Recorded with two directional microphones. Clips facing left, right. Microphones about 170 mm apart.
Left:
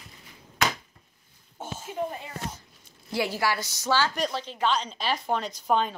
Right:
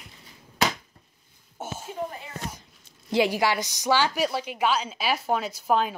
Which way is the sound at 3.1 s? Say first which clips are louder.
Right 4 dB; 20° right (ahead or behind).